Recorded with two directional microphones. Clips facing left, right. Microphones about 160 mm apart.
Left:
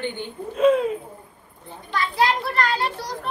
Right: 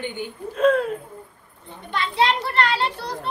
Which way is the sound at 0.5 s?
5° left (ahead or behind).